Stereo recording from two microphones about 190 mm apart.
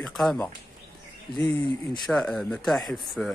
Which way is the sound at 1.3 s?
10° left (ahead or behind).